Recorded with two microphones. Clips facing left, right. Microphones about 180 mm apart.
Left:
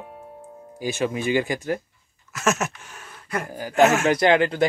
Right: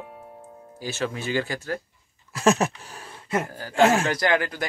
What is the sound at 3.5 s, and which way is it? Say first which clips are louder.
Speech: left 5 dB; 15° left (ahead or behind).